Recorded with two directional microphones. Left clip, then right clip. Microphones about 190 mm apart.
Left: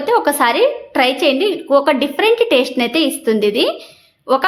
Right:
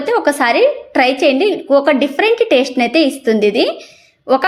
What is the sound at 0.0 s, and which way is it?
A woman's voice, 10° right (ahead or behind).